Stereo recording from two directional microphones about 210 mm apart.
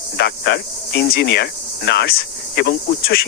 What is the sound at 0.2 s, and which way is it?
Cricket, 50° left (ahead or behind).